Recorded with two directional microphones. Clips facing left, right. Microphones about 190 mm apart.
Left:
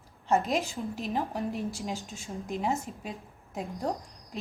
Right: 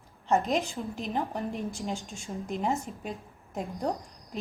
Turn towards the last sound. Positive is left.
turn(degrees=0)  # may be behind; listen again after turning